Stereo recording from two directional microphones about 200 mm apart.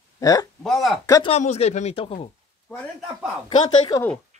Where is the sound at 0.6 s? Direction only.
Centre (ahead or behind).